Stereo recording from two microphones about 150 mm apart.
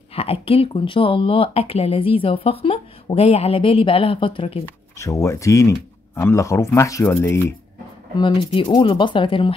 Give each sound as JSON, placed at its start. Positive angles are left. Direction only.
{"t": 0.1, "sound": "speech", "side_deg": 40}
{"t": 4.9, "sound": "speech", "side_deg": 20}
{"t": 8.2, "sound": "speech", "side_deg": 30}